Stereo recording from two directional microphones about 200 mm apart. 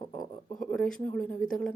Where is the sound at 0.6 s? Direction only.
5° left (ahead or behind).